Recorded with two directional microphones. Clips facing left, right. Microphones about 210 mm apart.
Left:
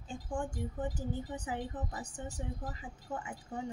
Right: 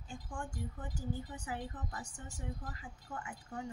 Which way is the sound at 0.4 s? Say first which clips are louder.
Left 7 dB; 20° left (ahead or behind).